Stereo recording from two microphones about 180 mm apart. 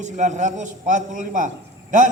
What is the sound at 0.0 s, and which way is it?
A man's voice, 45° right (ahead or behind).